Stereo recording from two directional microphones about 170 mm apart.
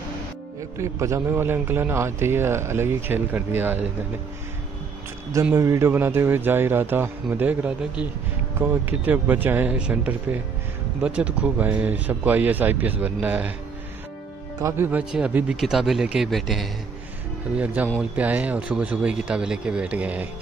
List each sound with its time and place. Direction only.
0.7 s a man's voice: 15° right (ahead or behind)
5.3 s a man's voice: 15° right (ahead or behind)
14.6 s speech: 10° right (ahead or behind)
17.8 s a man's voice: 10° right (ahead or behind)